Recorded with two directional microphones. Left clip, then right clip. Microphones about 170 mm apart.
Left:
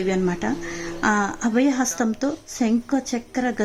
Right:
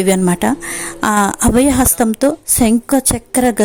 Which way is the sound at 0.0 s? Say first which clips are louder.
Right 9 dB; 40° right (ahead or behind).